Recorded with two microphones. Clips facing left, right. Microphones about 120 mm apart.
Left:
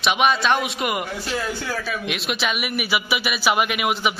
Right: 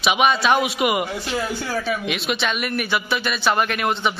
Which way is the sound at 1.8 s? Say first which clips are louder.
Right 3 dB; centre (ahead or behind).